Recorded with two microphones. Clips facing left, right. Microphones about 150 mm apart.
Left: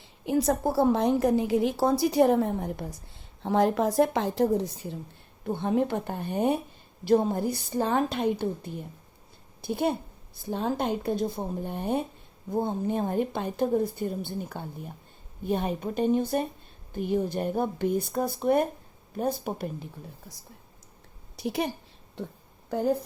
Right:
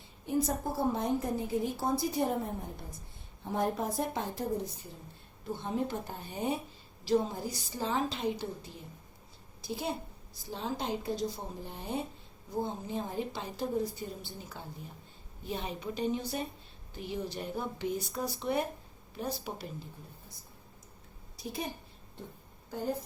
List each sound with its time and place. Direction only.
0.0 s a woman's voice: 85° left
5.5 s a woman's voice: 60° left (ahead or behind)
21.3 s a sound: 75° left (ahead or behind)